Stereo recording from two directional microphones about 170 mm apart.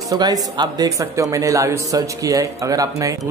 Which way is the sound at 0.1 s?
20° right (ahead or behind).